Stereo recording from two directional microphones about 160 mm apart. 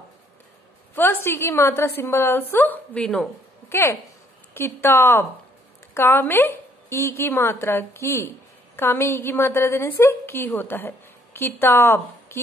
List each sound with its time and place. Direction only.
0.9 s a woman's voice: 15° left (ahead or behind)
3.6 s a woman's voice: 15° left (ahead or behind)